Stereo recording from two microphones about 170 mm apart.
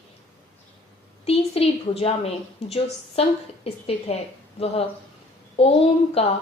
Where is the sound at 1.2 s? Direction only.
35° left (ahead or behind).